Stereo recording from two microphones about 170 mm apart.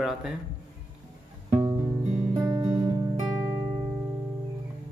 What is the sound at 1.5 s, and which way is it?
Music, 15° right (ahead or behind).